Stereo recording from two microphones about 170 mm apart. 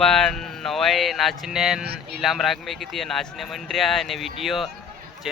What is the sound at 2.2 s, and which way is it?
Speech, centre (ahead or behind).